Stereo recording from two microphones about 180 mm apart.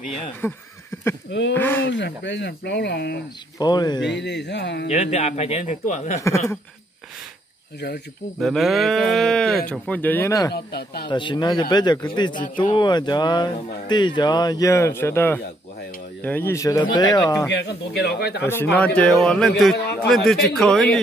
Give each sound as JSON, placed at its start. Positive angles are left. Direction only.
{"t": 0.4, "sound": "speech", "side_deg": 10}
{"t": 1.8, "sound": "speech", "side_deg": 80}
{"t": 3.5, "sound": "speech", "side_deg": 20}
{"t": 4.0, "sound": "speech", "side_deg": 75}
{"t": 4.8, "sound": "speech", "side_deg": 40}
{"t": 6.2, "sound": "speech", "side_deg": 15}
{"t": 8.4, "sound": "speech", "side_deg": 0}
{"t": 10.5, "sound": "speech", "side_deg": 65}
{"t": 11.1, "sound": "speech", "side_deg": 25}
{"t": 17.5, "sound": "speech", "side_deg": 70}
{"t": 18.4, "sound": "speech", "side_deg": 10}